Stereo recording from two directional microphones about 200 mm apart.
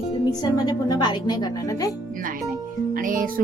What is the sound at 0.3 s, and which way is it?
Speech, 20° left (ahead or behind).